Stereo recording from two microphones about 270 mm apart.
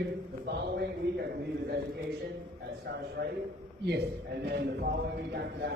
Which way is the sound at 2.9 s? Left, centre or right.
Right.